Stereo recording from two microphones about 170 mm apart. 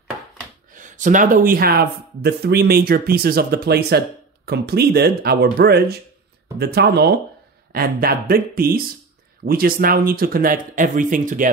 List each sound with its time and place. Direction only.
0.7 s speech: 50° right (ahead or behind); by 7.2 s 75° right (ahead or behind)
7.7 s speech: 60° right (ahead or behind)